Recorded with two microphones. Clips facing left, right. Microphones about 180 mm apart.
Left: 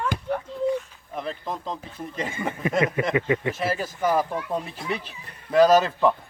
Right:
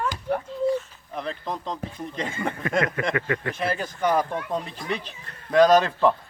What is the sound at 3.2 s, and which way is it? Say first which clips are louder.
Speech: left 3 dB; 15° left (ahead or behind).